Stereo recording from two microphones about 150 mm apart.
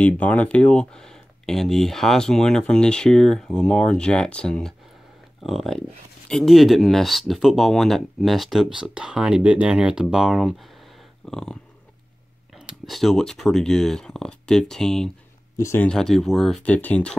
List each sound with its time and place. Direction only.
0.0 s speech: 10° left (ahead or behind)
12.5 s speech: centre (ahead or behind)
15.5 s speech: 20° left (ahead or behind)
15.9 s speech: 5° left (ahead or behind)